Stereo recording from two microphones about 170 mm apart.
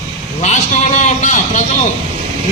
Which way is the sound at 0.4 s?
45° left (ahead or behind).